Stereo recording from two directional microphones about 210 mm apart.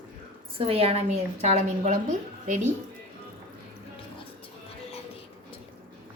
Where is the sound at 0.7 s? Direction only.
30° right (ahead or behind).